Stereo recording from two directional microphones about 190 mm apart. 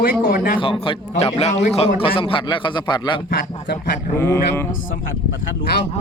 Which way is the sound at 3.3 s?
60° left (ahead or behind).